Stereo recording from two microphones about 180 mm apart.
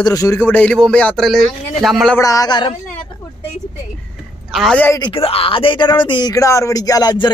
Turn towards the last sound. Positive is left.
turn(degrees=25)  # may be behind; listen again after turning